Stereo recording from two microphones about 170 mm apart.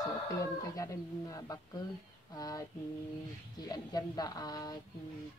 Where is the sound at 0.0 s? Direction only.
20° left (ahead or behind).